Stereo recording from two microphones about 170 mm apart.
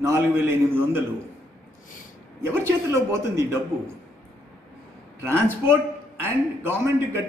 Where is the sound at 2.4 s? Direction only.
15° right (ahead or behind).